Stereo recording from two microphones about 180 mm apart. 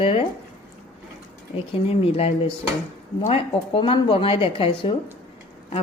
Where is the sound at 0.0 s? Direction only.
30° left (ahead or behind).